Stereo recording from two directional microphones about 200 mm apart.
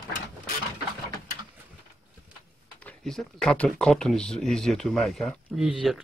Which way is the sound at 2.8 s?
5° left (ahead or behind).